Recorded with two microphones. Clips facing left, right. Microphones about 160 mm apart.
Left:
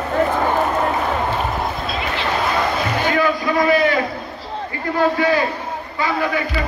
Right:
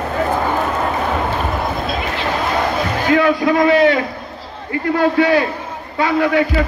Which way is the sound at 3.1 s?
70° right (ahead or behind).